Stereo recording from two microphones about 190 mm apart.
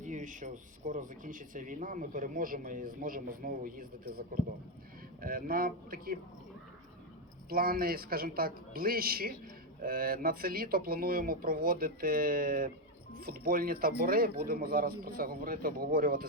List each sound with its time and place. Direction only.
0.0 s speech: 40° right (ahead or behind)
5.2 s speech: 50° right (ahead or behind)
7.5 s speech: 50° right (ahead or behind)